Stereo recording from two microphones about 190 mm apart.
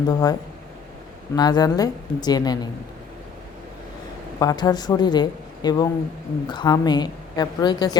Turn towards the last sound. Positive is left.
turn(degrees=20)  # may be behind; listen again after turning